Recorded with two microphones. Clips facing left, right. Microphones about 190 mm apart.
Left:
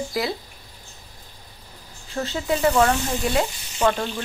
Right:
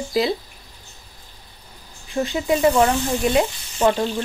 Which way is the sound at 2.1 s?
15° right (ahead or behind).